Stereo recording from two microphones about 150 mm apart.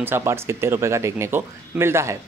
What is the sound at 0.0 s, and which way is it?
Speech, 15° right (ahead or behind).